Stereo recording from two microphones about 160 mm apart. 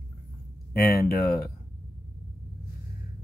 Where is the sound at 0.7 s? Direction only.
75° left (ahead or behind).